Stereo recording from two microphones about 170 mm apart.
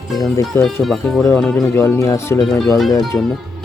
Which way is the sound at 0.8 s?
Centre (ahead or behind).